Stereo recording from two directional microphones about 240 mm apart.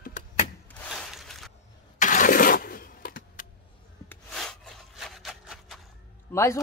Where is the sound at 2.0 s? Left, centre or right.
Left.